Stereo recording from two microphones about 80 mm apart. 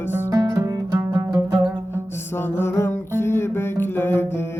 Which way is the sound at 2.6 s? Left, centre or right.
Left.